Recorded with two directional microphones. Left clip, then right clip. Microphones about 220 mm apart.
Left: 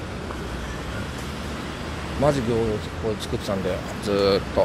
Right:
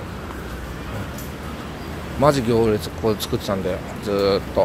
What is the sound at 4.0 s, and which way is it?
Speech, 5° right (ahead or behind).